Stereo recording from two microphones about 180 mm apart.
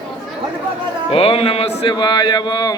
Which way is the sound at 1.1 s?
30° left (ahead or behind).